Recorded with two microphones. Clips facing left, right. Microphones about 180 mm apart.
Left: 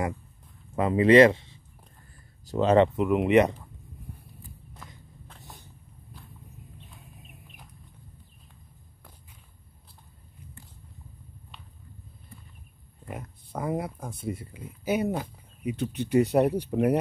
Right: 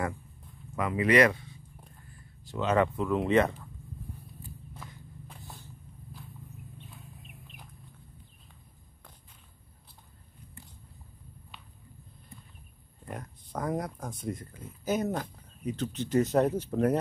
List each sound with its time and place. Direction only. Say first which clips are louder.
0.7 s speech: left 7 dB; 30° left (ahead or behind)
2.4 s speech: left 6 dB; 35° left (ahead or behind)
3.0 s speech: left 4 dB; 20° left (ahead or behind)
13.0 s speech: left 2 dB; 5° left (ahead or behind)